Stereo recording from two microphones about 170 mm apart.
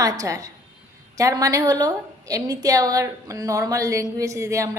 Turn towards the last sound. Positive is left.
turn(degrees=-15)  # may be behind; listen again after turning